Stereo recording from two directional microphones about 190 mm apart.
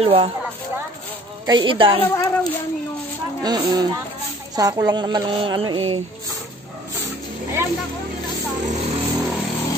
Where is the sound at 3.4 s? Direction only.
20° right (ahead or behind).